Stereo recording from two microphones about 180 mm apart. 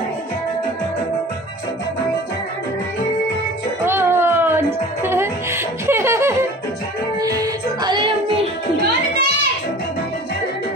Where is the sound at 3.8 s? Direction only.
15° right (ahead or behind).